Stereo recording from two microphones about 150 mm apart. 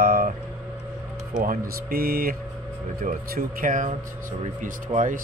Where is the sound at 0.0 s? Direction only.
80° right.